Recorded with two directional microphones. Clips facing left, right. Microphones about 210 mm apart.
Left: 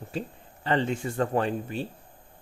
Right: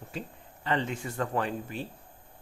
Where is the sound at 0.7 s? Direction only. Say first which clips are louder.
Left 4 dB; 30° left (ahead or behind).